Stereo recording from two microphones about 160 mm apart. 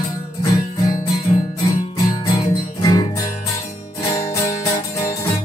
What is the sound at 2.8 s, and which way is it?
Music, 25° left (ahead or behind).